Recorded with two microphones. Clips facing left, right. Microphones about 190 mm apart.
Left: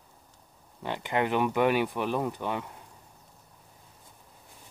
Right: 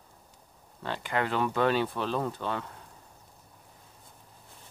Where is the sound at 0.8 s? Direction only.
20° left (ahead or behind).